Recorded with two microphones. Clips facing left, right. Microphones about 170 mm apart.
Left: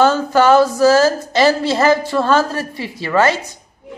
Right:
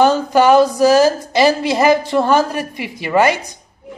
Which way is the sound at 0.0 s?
15° right (ahead or behind).